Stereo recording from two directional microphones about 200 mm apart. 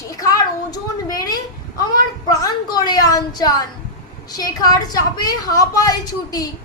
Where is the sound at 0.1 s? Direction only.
20° left (ahead or behind).